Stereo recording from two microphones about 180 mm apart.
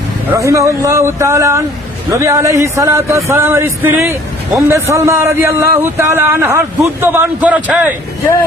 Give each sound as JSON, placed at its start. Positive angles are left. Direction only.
{"t": 0.3, "sound": "speech", "side_deg": -15}